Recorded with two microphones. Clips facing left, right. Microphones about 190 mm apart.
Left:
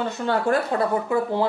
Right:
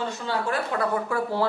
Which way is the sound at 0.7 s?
25° left (ahead or behind).